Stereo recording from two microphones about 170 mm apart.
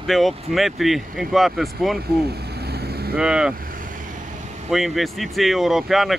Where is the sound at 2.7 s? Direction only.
65° right (ahead or behind).